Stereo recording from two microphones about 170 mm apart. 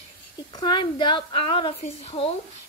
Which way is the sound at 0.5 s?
25° left (ahead or behind).